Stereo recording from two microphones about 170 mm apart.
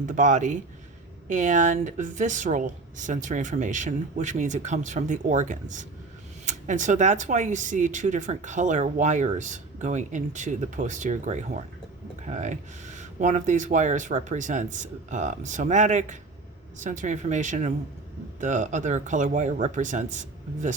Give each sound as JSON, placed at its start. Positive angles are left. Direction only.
{"t": 0.0, "sound": "speech", "side_deg": -45}